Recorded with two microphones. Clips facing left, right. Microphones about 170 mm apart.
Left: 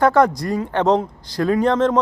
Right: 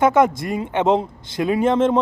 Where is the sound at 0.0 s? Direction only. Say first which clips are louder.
Left 1 dB; 20° right (ahead or behind).